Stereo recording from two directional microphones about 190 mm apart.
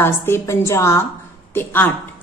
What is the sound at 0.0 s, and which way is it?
A woman's voice, 10° left (ahead or behind).